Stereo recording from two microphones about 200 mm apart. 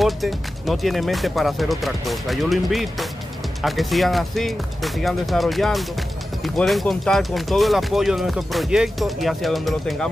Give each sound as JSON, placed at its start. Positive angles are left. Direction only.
{"t": 0.0, "sound": "speech", "side_deg": 0}